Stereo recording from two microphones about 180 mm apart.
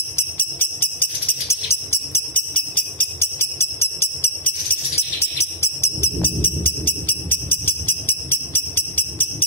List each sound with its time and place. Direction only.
0.1 s music: 10° left (ahead or behind)
1.5 s jingle bell: 15° left (ahead or behind)
5.6 s music: 15° left (ahead or behind)